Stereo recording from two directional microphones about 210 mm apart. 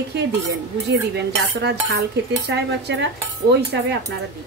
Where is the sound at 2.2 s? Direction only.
55° right (ahead or behind).